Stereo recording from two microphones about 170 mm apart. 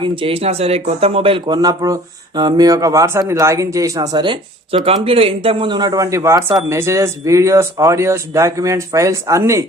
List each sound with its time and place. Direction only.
0.0 s speech: 30° right (ahead or behind)